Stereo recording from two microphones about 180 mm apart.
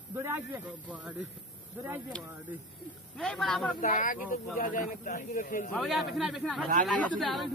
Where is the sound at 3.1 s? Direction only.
5° left (ahead or behind).